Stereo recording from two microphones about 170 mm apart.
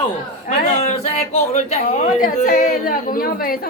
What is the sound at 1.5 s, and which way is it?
A woman's voice, 45° left (ahead or behind).